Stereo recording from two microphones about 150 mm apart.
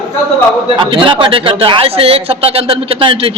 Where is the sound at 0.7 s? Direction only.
35° right (ahead or behind).